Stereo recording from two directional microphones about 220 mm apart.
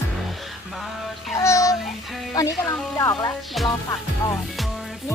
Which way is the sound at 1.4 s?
15° left (ahead or behind).